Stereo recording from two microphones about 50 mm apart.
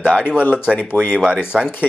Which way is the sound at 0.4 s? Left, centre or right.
Left.